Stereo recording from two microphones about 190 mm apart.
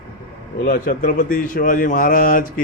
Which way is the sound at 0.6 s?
50° left (ahead or behind).